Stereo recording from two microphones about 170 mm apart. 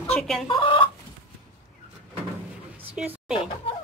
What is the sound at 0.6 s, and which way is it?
Chicken, 30° left (ahead or behind).